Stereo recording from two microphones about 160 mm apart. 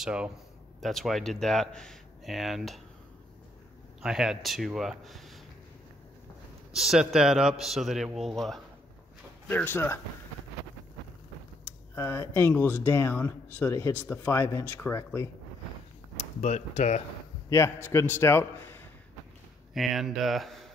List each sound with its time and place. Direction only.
0.0 s speech: 5° right (ahead or behind)
4.0 s speech: 5° right (ahead or behind)
6.7 s speech: centre (ahead or behind)
9.5 s speech: 10° left (ahead or behind)
11.9 s speech: 15° left (ahead or behind)
16.2 s speech: 45° left (ahead or behind)
17.5 s a man's voice: 15° left (ahead or behind)
19.7 s speech: centre (ahead or behind)